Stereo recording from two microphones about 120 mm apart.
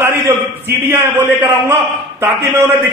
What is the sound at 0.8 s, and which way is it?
A man's voice, 15° right (ahead or behind).